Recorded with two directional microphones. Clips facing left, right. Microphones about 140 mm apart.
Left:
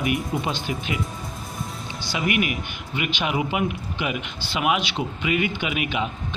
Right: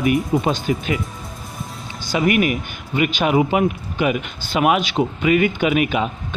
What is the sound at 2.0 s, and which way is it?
Speech, 45° right (ahead or behind).